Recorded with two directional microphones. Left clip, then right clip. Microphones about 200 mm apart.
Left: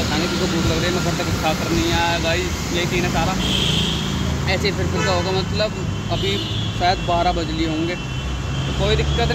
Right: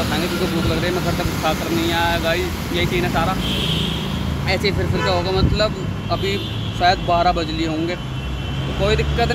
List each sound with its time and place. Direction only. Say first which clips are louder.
1.4 s speech: right 1 dB; 10° right (ahead or behind)
4.5 s speech: right 2 dB; 15° right (ahead or behind)
6.8 s speech: right 3 dB; 15° right (ahead or behind)
8.8 s speech: right 2 dB; 15° right (ahead or behind)